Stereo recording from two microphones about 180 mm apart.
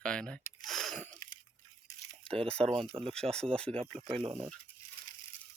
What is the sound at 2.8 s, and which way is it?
Speech, 30° right (ahead or behind).